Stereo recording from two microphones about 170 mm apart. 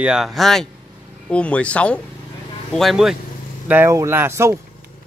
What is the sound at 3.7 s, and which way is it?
Speech, 15° right (ahead or behind).